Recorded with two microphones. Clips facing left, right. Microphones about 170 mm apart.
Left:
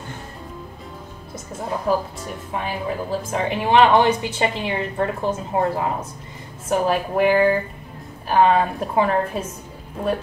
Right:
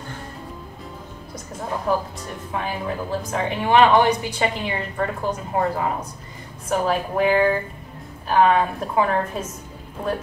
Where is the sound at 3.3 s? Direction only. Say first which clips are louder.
Left 1 dB; 25° left (ahead or behind).